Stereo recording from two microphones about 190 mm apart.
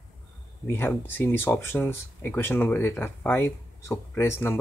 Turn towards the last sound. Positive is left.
turn(degrees=10)  # may be behind; listen again after turning